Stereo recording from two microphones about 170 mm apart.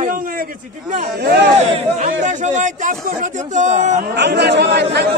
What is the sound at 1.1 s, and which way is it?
Speech, 70° right (ahead or behind).